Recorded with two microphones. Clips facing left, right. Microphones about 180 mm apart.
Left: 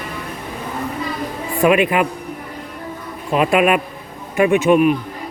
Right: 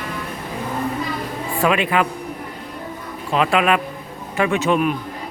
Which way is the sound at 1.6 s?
15° left (ahead or behind).